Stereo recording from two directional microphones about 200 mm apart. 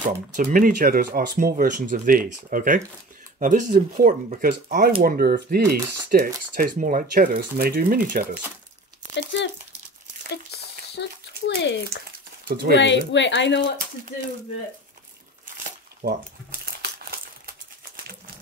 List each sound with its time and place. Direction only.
0.4 s speech: 45° right (ahead or behind)
9.1 s speech: 65° left (ahead or behind)
16.0 s crumpling: 50° right (ahead or behind)
17.9 s a sound: 50° right (ahead or behind)